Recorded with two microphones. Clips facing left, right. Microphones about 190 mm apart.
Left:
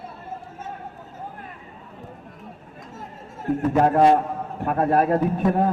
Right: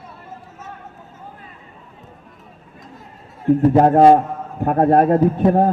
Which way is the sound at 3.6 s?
30° right (ahead or behind).